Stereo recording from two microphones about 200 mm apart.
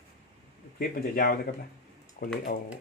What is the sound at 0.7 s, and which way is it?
Speech, 45° left (ahead or behind).